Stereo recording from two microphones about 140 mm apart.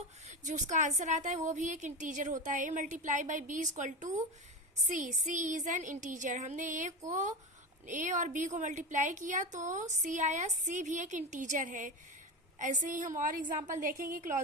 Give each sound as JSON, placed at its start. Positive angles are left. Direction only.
{"t": 0.3, "sound": "a woman's voice", "side_deg": -60}
{"t": 13.5, "sound": "a woman's voice", "side_deg": -65}